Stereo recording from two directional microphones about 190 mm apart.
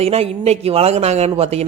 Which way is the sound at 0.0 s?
30° right (ahead or behind).